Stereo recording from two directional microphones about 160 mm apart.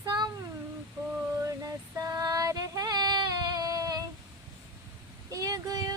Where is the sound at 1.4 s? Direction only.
20° right (ahead or behind).